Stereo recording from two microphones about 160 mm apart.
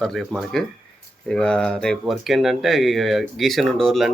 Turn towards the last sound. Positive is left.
turn(degrees=0)  # may be behind; listen again after turning